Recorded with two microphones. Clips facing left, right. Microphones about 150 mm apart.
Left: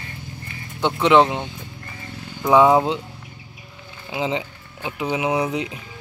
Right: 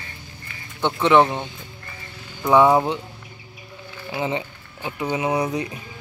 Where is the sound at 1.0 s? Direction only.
15° left (ahead or behind).